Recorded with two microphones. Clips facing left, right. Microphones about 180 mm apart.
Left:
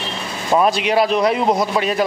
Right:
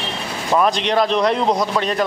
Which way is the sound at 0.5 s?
10° left (ahead or behind).